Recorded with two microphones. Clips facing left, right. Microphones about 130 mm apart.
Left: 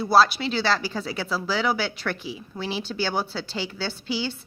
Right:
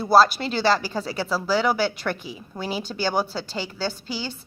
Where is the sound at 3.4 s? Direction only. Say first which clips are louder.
Right 2 dB; 45° right (ahead or behind).